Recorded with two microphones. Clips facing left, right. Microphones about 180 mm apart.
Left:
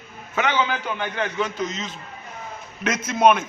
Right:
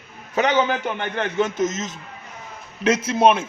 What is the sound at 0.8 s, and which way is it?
A man's voice, 55° right (ahead or behind).